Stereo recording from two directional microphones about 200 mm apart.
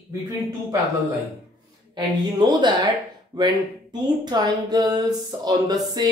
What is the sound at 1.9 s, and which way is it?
Speech, 20° right (ahead or behind).